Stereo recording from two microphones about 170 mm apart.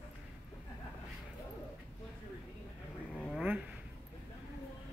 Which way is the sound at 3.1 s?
5° left (ahead or behind).